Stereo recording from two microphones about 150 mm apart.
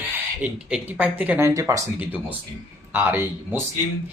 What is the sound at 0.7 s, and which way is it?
Speech, 10° right (ahead or behind).